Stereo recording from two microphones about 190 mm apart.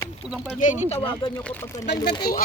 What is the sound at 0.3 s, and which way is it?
Speech, 5° right (ahead or behind).